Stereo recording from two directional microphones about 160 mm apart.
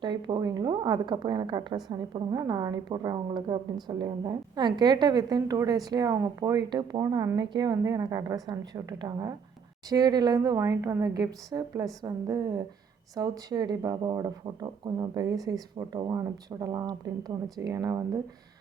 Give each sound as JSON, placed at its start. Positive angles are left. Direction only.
{"t": 0.0, "sound": "a woman's voice", "side_deg": -30}